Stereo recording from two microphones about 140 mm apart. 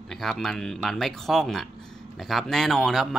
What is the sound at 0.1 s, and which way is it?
Speech, 5° left (ahead or behind).